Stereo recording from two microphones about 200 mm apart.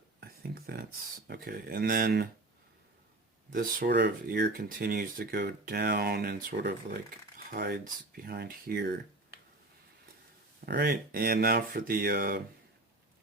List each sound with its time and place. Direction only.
0.3 s speech: 50° right (ahead or behind)
3.5 s speech: 45° right (ahead or behind)
4.5 s speech: 45° right (ahead or behind)
10.7 s speech: 50° right (ahead or behind)